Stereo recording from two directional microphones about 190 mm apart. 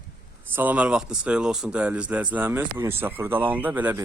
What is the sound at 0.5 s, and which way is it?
A man's voice, 10° right (ahead or behind).